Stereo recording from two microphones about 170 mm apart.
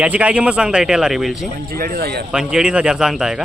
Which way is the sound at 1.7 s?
60° right (ahead or behind).